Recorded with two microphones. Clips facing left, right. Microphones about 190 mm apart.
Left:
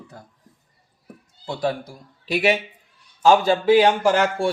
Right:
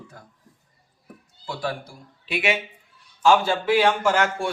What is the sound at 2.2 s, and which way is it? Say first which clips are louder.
Speech: left 5 dB; 40° left (ahead or behind).